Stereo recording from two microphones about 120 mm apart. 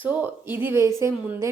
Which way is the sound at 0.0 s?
15° right (ahead or behind).